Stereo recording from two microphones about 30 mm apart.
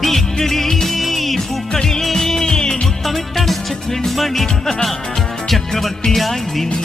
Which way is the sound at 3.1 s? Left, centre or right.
Centre.